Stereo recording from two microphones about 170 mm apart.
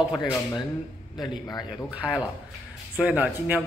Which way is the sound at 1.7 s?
5° right (ahead or behind).